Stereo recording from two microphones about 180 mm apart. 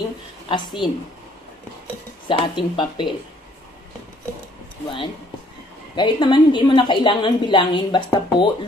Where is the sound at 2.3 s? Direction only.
25° left (ahead or behind).